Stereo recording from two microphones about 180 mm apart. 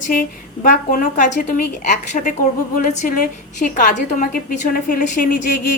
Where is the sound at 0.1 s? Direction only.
50° left (ahead or behind).